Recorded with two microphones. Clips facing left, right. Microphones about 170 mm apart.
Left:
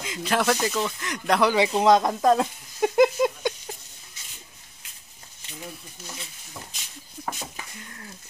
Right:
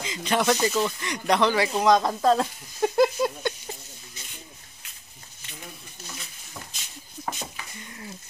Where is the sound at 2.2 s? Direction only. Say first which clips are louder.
Left 1 dB; 15° left (ahead or behind).